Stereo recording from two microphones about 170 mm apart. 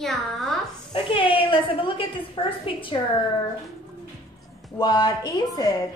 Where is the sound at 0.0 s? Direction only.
Centre (ahead or behind).